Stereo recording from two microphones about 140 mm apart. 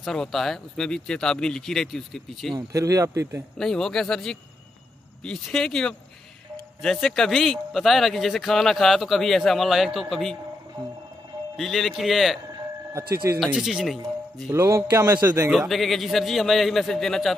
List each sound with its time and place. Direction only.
0.0 s a man's voice: 5° left (ahead or behind)
2.5 s a man's voice: 25° right (ahead or behind)
3.5 s a man's voice: 5° left (ahead or behind)
11.5 s a man's voice: centre (ahead or behind)
13.1 s a man's voice: 20° right (ahead or behind)
13.4 s a man's voice: centre (ahead or behind)
14.5 s a man's voice: 20° right (ahead or behind)
15.5 s a man's voice: centre (ahead or behind)